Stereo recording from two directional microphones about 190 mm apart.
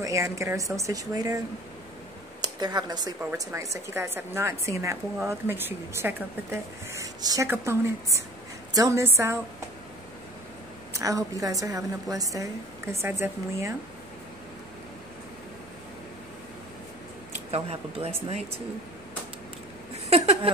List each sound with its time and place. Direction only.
0.0 s a woman's voice: 15° right (ahead or behind)
2.4 s a woman's voice: 20° right (ahead or behind)
10.9 s a woman's voice: 15° right (ahead or behind)
17.5 s speech: 30° right (ahead or behind)
20.1 s a sound: 35° right (ahead or behind)